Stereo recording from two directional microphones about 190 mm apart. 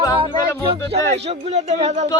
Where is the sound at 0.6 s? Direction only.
30° right (ahead or behind).